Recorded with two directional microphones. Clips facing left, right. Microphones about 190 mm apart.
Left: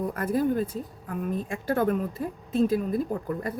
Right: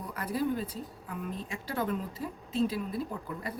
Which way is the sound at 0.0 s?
50° left (ahead or behind).